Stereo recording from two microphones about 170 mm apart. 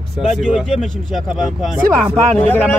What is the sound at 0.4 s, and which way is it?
Speech, 5° right (ahead or behind).